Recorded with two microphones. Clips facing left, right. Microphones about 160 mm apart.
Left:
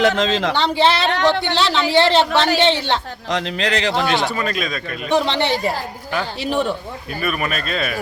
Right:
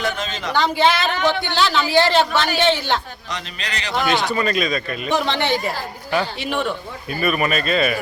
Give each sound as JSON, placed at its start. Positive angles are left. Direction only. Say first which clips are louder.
{"t": 0.0, "sound": "speech", "louder": "left 8 dB", "side_deg": 90}
{"t": 0.5, "sound": "a woman's voice", "louder": "right 4 dB", "side_deg": 30}
{"t": 1.1, "sound": "speech", "louder": "left 3 dB", "side_deg": 75}
{"t": 1.4, "sound": "a woman's voice", "louder": "left 1 dB", "side_deg": 30}
{"t": 3.2, "sound": "speech", "louder": "left 9 dB", "side_deg": 90}
{"t": 4.1, "sound": "speech", "louder": "right 1 dB", "side_deg": 0}
{"t": 5.1, "sound": "speech", "louder": "left 2 dB", "side_deg": 30}
{"t": 7.2, "sound": "speech", "louder": "right 3 dB", "side_deg": 0}